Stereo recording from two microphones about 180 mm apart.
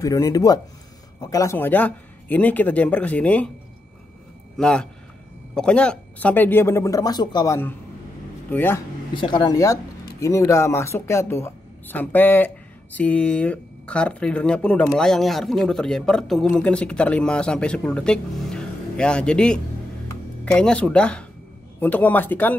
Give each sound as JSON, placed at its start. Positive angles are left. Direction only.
{"t": 0.0, "sound": "speech", "side_deg": 20}
{"t": 4.6, "sound": "speech", "side_deg": 5}
{"t": 9.1, "sound": "speech", "side_deg": 25}